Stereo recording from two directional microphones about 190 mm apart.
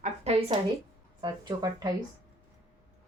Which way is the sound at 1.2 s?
25° right (ahead or behind).